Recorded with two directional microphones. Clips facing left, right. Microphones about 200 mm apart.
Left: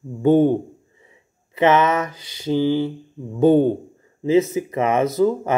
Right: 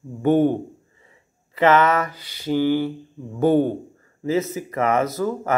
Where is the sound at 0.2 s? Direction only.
20° left (ahead or behind).